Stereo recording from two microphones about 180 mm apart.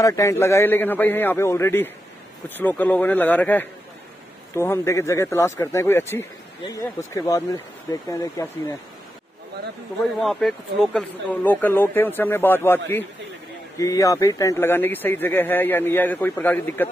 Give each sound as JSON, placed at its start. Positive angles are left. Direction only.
{"t": 0.0, "sound": "speech", "side_deg": 15}
{"t": 10.2, "sound": "speech", "side_deg": 0}